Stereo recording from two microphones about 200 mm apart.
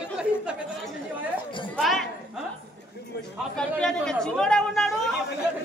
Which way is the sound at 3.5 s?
5° left (ahead or behind).